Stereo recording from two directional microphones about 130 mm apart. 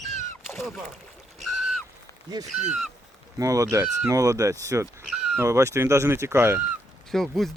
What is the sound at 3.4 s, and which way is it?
Speech, 25° right (ahead or behind).